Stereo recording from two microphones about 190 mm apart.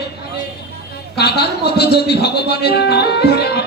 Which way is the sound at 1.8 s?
60° left (ahead or behind).